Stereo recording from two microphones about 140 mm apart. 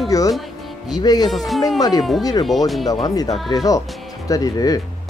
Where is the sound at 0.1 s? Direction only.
25° left (ahead or behind).